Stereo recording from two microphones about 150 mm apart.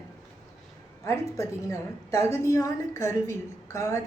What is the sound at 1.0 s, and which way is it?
A woman's voice, 20° left (ahead or behind).